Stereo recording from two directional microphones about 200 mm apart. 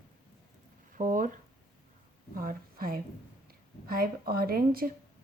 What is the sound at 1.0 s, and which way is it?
Speech, 40° right (ahead or behind).